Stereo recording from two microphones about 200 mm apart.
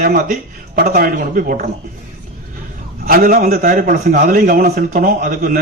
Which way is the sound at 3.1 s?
45° right (ahead or behind).